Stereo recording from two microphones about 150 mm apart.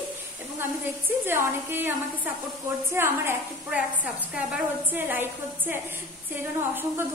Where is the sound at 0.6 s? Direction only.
15° right (ahead or behind).